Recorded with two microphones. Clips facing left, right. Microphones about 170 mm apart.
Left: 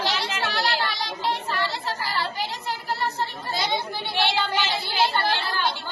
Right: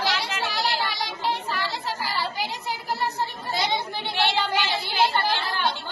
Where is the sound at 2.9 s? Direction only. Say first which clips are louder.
Even; 15° right (ahead or behind).